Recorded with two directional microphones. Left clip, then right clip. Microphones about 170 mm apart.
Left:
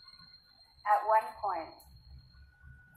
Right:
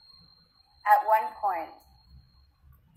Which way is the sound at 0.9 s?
35° right (ahead or behind).